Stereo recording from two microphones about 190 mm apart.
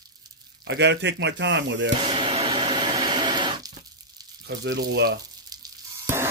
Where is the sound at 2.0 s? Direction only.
25° right (ahead or behind).